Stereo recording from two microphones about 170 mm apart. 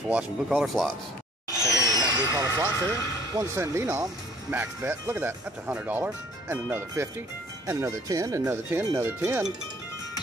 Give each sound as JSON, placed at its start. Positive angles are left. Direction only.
{"t": 0.5, "sound": "speech", "side_deg": 0}
{"t": 1.7, "sound": "speech", "side_deg": -25}